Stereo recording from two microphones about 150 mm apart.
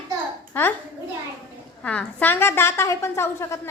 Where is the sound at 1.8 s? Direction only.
10° left (ahead or behind).